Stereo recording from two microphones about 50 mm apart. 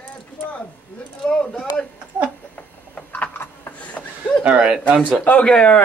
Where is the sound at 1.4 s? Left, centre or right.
Centre.